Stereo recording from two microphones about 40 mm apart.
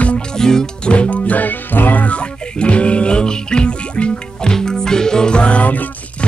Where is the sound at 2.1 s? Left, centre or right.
Left.